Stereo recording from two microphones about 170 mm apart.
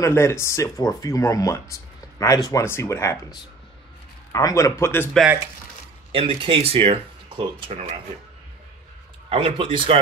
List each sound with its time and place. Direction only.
0.0 s speech: 15° left (ahead or behind)
6.1 s speech: 30° right (ahead or behind)
9.3 s speech: 35° right (ahead or behind)